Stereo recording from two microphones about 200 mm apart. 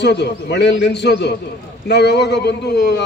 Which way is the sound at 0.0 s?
60° left (ahead or behind).